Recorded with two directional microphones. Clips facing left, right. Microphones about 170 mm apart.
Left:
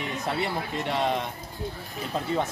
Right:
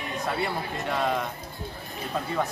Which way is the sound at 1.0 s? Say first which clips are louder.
Even; 25° left (ahead or behind).